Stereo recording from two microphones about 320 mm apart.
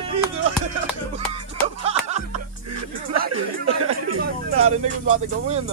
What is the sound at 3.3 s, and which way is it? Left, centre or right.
Speech, right.